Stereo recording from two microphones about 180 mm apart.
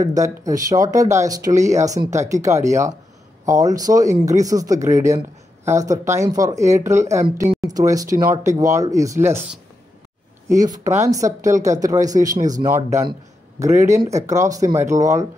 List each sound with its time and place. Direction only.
0.0 s speech: 20° right (ahead or behind)
10.5 s speech: 20° right (ahead or behind)